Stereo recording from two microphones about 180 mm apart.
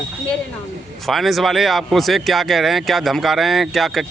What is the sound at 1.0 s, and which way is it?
Speech, centre (ahead or behind).